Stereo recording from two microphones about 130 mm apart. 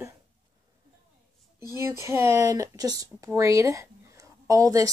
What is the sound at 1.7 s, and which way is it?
Speech, 20° right (ahead or behind).